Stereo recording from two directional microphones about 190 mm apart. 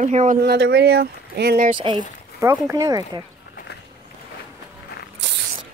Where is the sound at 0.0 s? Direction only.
40° right (ahead or behind).